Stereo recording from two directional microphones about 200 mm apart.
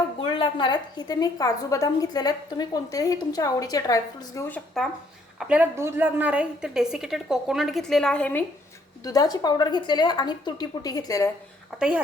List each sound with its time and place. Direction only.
0.2 s a woman's voice: 25° left (ahead or behind); by 4.9 s 5° left (ahead or behind)
5.4 s a woman's voice: 5° right (ahead or behind)
9.0 s a woman's voice: 20° left (ahead or behind)